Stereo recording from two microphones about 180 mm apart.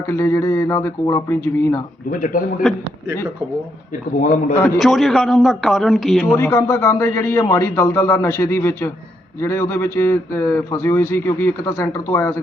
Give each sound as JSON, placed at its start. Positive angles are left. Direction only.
{"t": 0.1, "sound": "speech", "side_deg": 15}
{"t": 2.0, "sound": "a man's voice", "side_deg": 50}
{"t": 2.6, "sound": "a man's voice", "side_deg": 0}
{"t": 4.2, "sound": "a man's voice", "side_deg": 45}
{"t": 4.6, "sound": "a man's voice", "side_deg": 0}
{"t": 6.2, "sound": "speech", "side_deg": 15}